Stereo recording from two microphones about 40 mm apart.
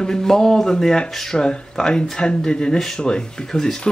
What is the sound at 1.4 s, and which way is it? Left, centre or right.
Speech, left.